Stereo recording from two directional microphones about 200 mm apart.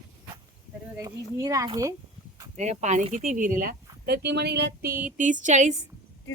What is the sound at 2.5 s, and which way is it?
Speech, 35° right (ahead or behind).